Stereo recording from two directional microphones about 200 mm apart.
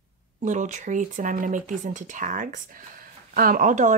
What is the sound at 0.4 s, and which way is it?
Speech, 35° right (ahead or behind).